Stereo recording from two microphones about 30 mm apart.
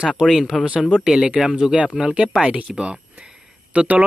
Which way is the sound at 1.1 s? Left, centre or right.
Right.